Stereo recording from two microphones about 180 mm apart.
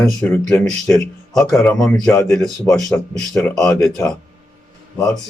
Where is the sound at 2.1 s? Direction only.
15° left (ahead or behind).